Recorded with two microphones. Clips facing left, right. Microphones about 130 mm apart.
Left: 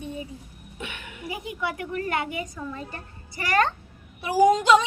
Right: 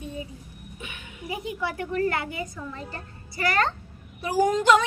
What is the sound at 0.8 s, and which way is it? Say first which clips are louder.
Speech: left 4 dB; 90° left.